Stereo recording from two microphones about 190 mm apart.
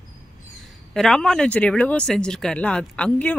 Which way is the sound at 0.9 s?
Centre (ahead or behind).